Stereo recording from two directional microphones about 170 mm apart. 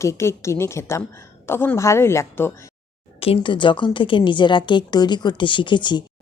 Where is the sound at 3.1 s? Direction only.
35° left (ahead or behind).